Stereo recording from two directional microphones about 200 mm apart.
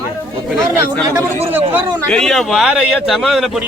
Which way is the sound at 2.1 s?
Centre (ahead or behind).